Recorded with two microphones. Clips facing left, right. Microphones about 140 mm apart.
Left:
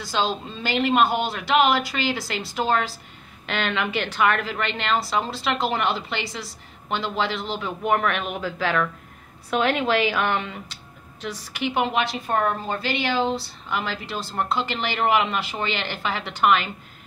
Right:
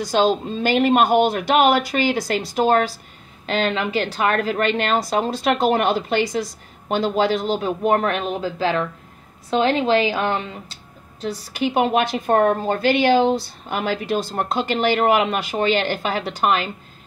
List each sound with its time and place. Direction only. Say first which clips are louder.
0.0 s a woman's voice: right 7 dB; 45° right (ahead or behind)